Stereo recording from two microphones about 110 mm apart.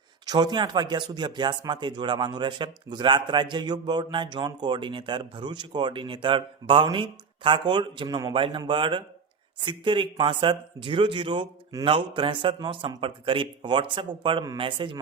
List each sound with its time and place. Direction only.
0.3 s speech: 40° right (ahead or behind)
8.3 s speech: 50° right (ahead or behind)